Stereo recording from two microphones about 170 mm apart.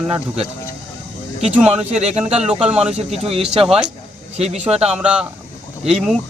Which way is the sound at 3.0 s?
40° right (ahead or behind).